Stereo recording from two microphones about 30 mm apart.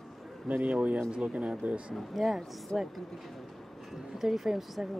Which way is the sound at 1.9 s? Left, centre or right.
Centre.